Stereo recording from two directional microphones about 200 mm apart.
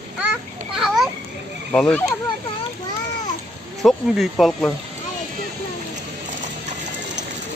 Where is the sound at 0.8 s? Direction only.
Centre (ahead or behind).